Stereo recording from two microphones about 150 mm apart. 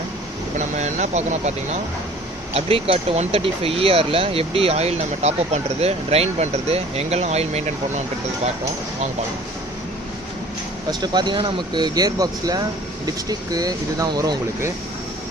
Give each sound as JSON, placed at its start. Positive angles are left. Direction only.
{"t": 0.8, "sound": "speech", "side_deg": -50}
{"t": 11.0, "sound": "speech", "side_deg": -30}